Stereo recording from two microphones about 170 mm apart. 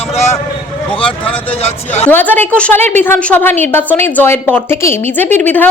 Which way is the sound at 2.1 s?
10° left (ahead or behind).